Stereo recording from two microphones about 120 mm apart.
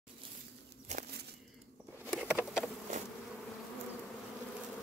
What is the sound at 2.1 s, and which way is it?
Patter, 10° right (ahead or behind).